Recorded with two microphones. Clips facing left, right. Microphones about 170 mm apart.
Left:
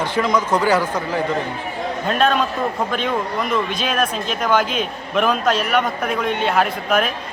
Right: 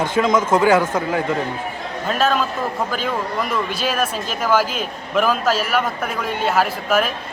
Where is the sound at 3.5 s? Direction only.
5° right (ahead or behind).